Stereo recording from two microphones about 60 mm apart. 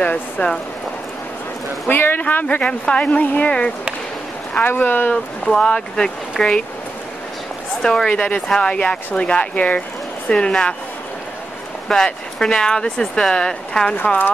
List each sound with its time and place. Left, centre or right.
0.0 s speech: centre
1.9 s speech: left
4.6 s speech: left
5.1 s speech: centre
7.8 s speech: centre
11.9 s speech: centre
13.9 s speech: left